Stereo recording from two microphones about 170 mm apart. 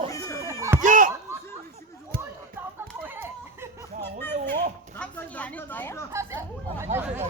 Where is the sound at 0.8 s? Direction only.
50° right (ahead or behind).